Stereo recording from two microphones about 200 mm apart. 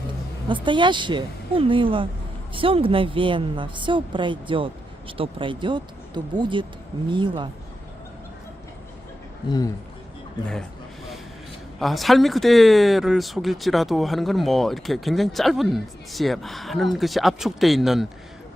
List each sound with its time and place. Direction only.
0.4 s a woman's voice: 25° right (ahead or behind)
9.5 s speech: 20° left (ahead or behind)
10.5 s a sound: centre (ahead or behind)
11.8 s speech: centre (ahead or behind)